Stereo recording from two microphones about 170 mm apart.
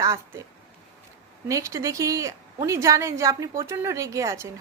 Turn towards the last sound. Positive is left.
turn(degrees=-15)  # may be behind; listen again after turning